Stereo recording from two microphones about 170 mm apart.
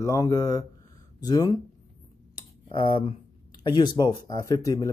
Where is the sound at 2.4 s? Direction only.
30° left (ahead or behind).